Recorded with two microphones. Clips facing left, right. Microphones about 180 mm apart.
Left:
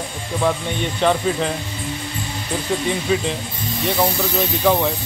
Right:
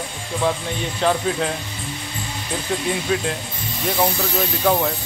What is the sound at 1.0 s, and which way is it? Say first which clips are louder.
Speech: left 2 dB; centre (ahead or behind).